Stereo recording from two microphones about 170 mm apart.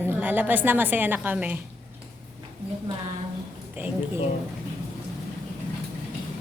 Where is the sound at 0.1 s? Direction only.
10° right (ahead or behind).